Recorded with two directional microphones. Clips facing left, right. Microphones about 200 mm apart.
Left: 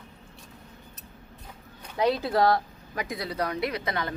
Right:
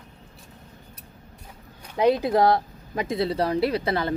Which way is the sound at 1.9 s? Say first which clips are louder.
Right 4 dB; 20° right (ahead or behind).